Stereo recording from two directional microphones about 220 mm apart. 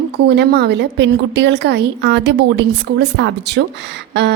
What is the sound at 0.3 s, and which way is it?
A woman's voice, 45° right (ahead or behind).